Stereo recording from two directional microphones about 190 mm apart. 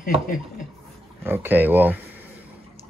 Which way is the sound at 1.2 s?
10° right (ahead or behind).